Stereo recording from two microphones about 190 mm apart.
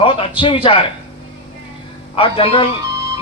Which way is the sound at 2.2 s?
30° left (ahead or behind).